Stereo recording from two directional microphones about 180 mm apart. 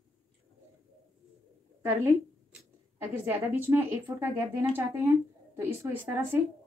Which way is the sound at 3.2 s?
15° right (ahead or behind).